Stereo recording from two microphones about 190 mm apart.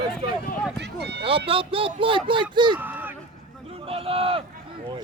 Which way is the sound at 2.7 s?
10° right (ahead or behind).